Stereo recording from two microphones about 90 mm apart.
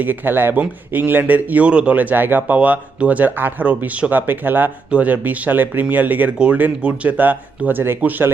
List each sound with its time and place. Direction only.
0.0 s a man's voice: 20° right (ahead or behind)